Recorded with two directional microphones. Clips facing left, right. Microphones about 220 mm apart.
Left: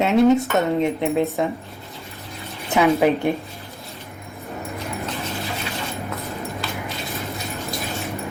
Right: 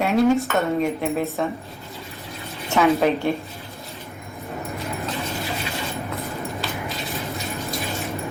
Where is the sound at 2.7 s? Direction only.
15° left (ahead or behind).